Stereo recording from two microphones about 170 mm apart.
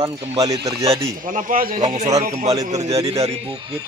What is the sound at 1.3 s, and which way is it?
Speech, 55° right (ahead or behind).